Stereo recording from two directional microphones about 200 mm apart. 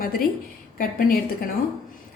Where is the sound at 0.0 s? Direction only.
45° left (ahead or behind).